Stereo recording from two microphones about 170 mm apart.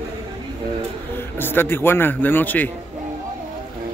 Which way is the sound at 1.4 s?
15° left (ahead or behind).